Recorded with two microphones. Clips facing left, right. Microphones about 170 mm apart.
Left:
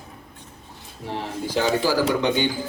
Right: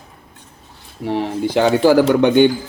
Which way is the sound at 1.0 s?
65° right (ahead or behind).